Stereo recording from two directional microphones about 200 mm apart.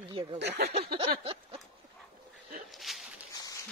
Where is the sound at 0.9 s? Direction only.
30° right (ahead or behind).